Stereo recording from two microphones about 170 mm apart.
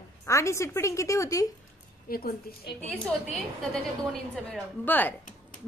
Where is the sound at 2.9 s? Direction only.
5° left (ahead or behind).